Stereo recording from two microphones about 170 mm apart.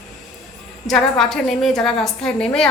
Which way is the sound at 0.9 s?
Centre (ahead or behind).